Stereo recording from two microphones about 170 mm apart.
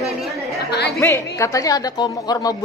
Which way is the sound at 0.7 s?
75° left (ahead or behind).